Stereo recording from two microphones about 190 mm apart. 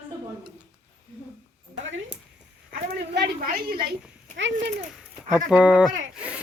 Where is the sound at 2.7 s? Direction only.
55° right (ahead or behind).